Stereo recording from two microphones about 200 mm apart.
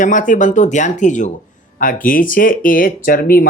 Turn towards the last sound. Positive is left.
turn(degrees=45)  # may be behind; listen again after turning